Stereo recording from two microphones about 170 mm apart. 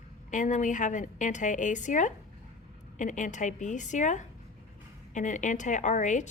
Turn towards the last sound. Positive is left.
turn(degrees=45)  # may be behind; listen again after turning